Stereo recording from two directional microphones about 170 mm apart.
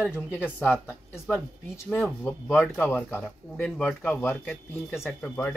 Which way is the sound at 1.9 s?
10° left (ahead or behind).